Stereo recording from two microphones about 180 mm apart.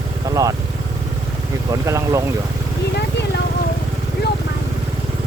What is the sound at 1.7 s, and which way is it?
Speech, 15° right (ahead or behind).